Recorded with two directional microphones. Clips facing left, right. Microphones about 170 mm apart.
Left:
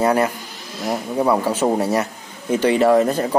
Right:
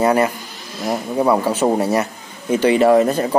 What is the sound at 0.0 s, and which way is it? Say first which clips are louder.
Speech: right 2 dB; 10° right (ahead or behind).